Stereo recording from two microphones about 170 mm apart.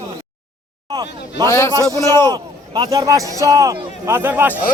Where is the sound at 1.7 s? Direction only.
20° right (ahead or behind).